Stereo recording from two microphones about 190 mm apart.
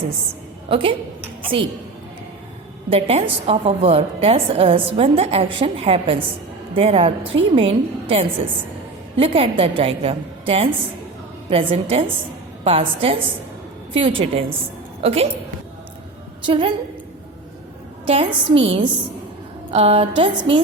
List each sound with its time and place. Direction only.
0.7 s a woman's voice: 30° right (ahead or behind)
2.9 s a woman's voice: 30° right (ahead or behind)
16.5 s a woman's voice: 25° right (ahead or behind)
18.0 s a woman's voice: 30° right (ahead or behind)